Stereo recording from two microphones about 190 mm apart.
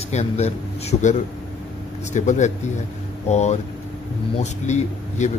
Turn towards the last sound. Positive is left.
turn(degrees=40)  # may be behind; listen again after turning